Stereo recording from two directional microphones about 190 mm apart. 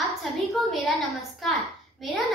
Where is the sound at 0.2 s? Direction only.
Centre (ahead or behind).